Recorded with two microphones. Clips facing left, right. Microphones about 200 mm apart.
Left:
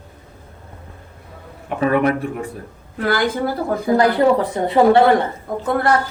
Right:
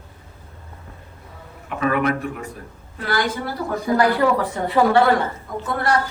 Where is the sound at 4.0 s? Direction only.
25° left (ahead or behind).